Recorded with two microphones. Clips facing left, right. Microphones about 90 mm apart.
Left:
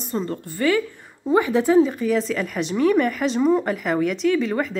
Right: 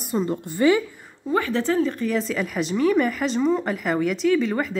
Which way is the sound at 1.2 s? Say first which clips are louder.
Left 4 dB; 15° left (ahead or behind).